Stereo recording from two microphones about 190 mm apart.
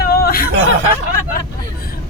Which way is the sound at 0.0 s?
55° left (ahead or behind).